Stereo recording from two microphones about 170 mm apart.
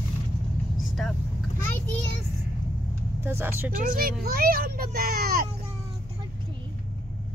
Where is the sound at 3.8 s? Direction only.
55° right (ahead or behind).